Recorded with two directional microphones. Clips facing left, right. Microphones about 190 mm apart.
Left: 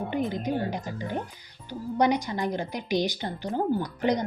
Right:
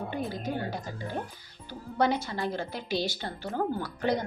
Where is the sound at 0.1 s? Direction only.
20° left (ahead or behind).